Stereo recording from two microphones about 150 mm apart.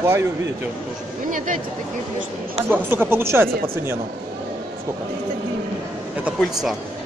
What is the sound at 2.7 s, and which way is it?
Speech, 15° right (ahead or behind).